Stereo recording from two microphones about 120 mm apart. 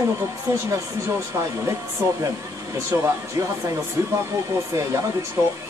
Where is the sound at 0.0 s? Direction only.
25° right (ahead or behind).